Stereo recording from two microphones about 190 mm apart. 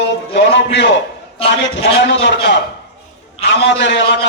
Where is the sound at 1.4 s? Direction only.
30° left (ahead or behind).